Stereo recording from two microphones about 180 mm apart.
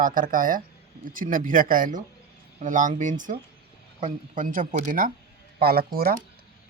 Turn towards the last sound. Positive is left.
turn(degrees=-55)  # may be behind; listen again after turning